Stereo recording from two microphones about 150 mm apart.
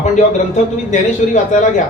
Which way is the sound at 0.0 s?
55° left (ahead or behind).